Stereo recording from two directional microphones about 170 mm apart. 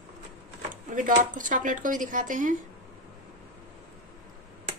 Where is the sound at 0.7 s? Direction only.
50° right (ahead or behind).